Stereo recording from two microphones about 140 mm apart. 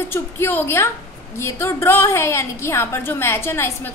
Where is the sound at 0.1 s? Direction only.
15° left (ahead or behind).